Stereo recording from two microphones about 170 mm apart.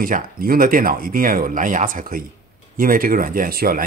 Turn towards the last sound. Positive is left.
turn(degrees=-60)  # may be behind; listen again after turning